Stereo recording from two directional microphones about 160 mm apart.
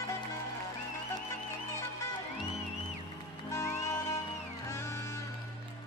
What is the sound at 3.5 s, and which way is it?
Music, 20° left (ahead or behind).